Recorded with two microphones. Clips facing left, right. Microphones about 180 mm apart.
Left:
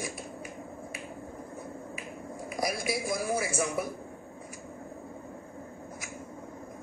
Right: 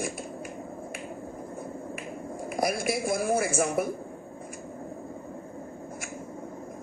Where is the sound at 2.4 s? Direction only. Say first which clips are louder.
Right 4 dB; 55° right (ahead or behind).